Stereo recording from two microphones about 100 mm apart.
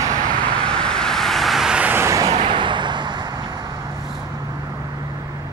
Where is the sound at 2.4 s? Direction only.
55° right (ahead or behind).